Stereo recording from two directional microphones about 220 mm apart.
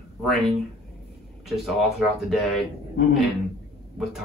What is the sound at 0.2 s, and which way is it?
A man's voice, centre (ahead or behind).